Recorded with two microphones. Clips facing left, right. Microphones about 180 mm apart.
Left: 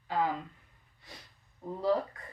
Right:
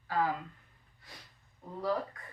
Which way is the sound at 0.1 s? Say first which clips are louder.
Left 1 dB; 20° left (ahead or behind).